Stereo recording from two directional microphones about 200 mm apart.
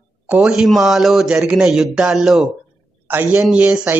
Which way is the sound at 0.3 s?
Centre (ahead or behind).